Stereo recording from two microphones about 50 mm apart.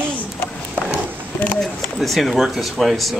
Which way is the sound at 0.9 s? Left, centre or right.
Left.